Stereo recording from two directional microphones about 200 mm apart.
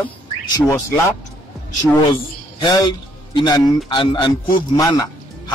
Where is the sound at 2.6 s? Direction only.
20° left (ahead or behind).